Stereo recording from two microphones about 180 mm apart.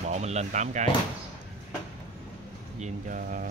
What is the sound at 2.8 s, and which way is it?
Speech, 45° right (ahead or behind).